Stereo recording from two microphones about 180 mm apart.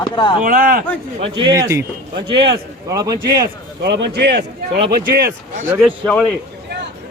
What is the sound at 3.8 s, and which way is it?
A man's voice, 70° right (ahead or behind).